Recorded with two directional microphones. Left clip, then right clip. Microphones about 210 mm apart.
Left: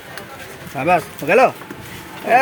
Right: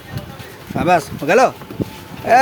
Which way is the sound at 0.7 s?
20° right (ahead or behind).